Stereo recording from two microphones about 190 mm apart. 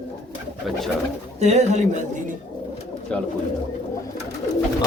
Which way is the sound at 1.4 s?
35° right (ahead or behind).